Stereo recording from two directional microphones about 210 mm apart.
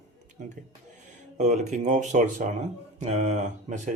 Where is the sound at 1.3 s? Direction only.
35° right (ahead or behind).